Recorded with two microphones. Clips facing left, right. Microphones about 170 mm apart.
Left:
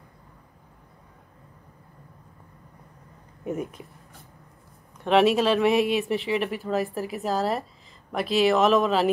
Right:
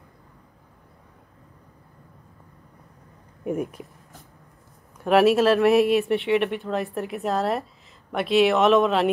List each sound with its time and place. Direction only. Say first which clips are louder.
3.4 s speech: right 3 dB; 10° right (ahead or behind)
4.9 s speech: right 2 dB; 5° right (ahead or behind)